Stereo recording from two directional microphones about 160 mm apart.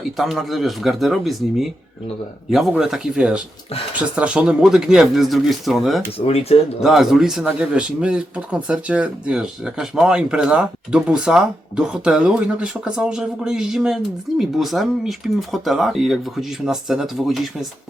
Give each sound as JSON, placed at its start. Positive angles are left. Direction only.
{"t": 0.2, "sound": "speech", "side_deg": 0}
{"t": 6.1, "sound": "speech", "side_deg": 40}
{"t": 6.8, "sound": "speech", "side_deg": 0}